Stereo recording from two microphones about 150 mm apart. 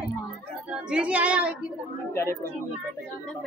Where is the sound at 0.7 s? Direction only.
5° right (ahead or behind).